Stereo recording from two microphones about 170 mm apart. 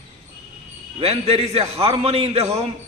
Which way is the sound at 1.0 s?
35° right (ahead or behind).